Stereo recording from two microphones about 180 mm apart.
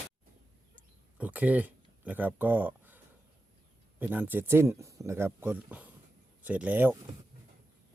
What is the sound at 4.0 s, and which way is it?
Speech, 10° right (ahead or behind).